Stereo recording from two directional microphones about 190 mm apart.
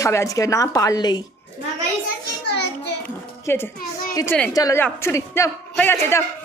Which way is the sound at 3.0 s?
10° left (ahead or behind).